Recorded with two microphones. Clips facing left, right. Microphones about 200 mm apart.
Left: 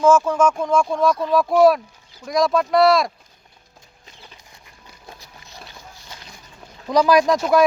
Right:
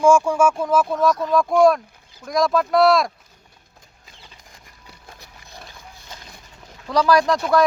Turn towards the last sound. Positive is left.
turn(degrees=15)  # may be behind; listen again after turning